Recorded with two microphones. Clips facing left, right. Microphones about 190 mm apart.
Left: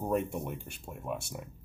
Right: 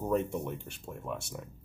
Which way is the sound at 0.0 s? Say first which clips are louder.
Right 1 dB; 15° left (ahead or behind).